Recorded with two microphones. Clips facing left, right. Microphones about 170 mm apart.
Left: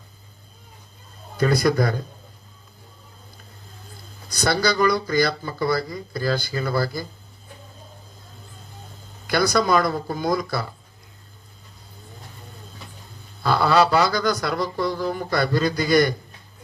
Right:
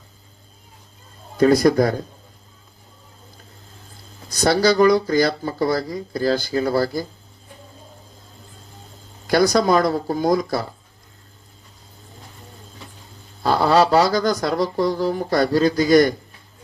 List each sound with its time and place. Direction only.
1.4 s speech: 50° right (ahead or behind)
4.6 s speech: 40° right (ahead or behind)
9.3 s speech: 45° right (ahead or behind)
13.4 s speech: 40° right (ahead or behind)